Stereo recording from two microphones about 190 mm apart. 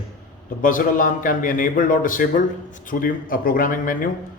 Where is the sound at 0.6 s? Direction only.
45° left (ahead or behind).